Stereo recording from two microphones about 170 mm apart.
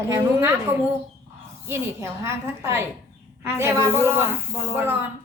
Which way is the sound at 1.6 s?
15° right (ahead or behind).